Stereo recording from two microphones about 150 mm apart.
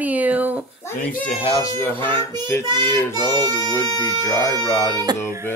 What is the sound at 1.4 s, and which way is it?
Speech, 25° left (ahead or behind).